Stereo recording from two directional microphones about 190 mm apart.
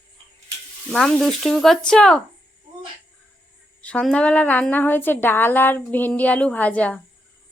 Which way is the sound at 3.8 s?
5° left (ahead or behind).